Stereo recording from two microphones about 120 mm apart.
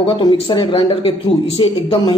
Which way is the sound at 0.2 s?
40° left (ahead or behind).